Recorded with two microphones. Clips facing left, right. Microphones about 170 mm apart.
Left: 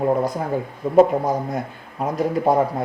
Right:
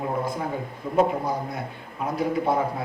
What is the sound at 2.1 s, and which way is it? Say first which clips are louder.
Speech: left 5 dB; 40° left (ahead or behind).